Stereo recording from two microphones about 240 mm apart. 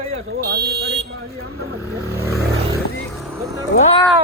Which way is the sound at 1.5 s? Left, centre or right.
Centre.